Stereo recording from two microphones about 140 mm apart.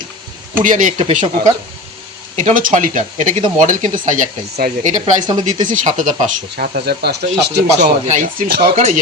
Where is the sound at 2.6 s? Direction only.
70° right (ahead or behind).